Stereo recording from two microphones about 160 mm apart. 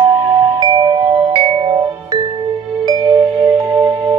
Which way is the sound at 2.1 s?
20° right (ahead or behind).